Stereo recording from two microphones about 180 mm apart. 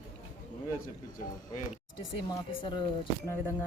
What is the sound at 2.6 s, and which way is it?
Speech, 25° left (ahead or behind).